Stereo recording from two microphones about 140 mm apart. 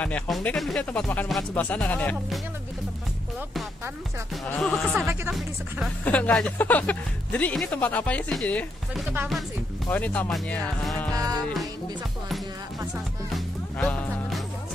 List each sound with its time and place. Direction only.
0.0 s speech: 10° left (ahead or behind)
4.6 s speech: 5° left (ahead or behind)
9.8 s speech: 10° left (ahead or behind)
11.1 s music: 25° right (ahead or behind)
11.4 s speech: centre (ahead or behind)
13.7 s music: 10° left (ahead or behind)